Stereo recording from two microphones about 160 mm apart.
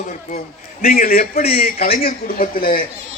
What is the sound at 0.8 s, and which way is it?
A man's voice, 65° left (ahead or behind).